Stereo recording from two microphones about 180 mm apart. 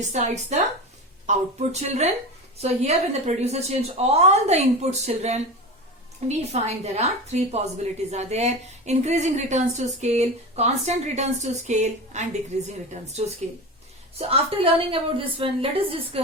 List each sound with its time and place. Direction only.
0.0 s a woman's voice: 40° right (ahead or behind)